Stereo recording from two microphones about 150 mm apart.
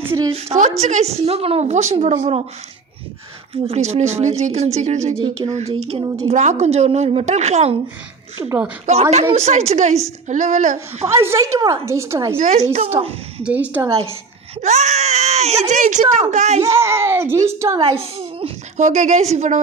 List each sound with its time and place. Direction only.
0.0 s a woman's voice: 15° right (ahead or behind)
0.6 s speech: 50° right (ahead or behind)
3.6 s speech: 45° right (ahead or behind)
8.4 s a woman's voice: 15° right (ahead or behind)
8.8 s speech: 50° right (ahead or behind)
11.1 s a woman's voice: 20° right (ahead or behind)
12.4 s speech: 50° right (ahead or behind)
13.4 s a woman's voice: 10° right (ahead or behind)
14.6 s speech: 50° right (ahead or behind)
15.7 s a woman's voice: 55° right (ahead or behind)
16.6 s a woman's voice: 20° right (ahead or behind)
17.7 s speech: 40° right (ahead or behind)